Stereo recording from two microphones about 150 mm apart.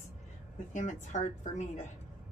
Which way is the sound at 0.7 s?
55° left (ahead or behind).